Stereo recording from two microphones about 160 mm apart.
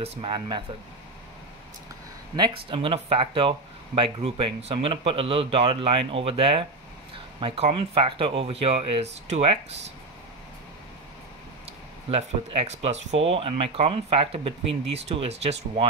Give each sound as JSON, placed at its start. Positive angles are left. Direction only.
{"t": 0.0, "sound": "speech", "side_deg": -35}
{"t": 2.3, "sound": "speech", "side_deg": -30}
{"t": 12.1, "sound": "speech", "side_deg": -40}